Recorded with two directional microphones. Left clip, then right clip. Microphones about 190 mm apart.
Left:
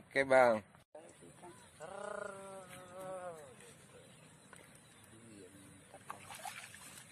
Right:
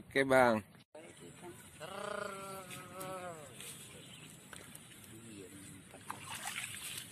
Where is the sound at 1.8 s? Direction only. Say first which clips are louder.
Right 2 dB; 30° left (ahead or behind).